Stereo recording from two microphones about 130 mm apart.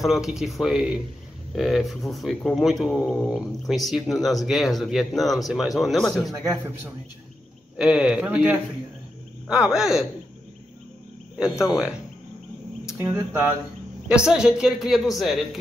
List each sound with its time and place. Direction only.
0.0 s speech: centre (ahead or behind)
6.4 s speech: 20° right (ahead or behind)
7.7 s speech: 5° right (ahead or behind)
11.6 s speech: 5° right (ahead or behind)
13.0 s speech: 15° right (ahead or behind); by 15.4 s centre (ahead or behind)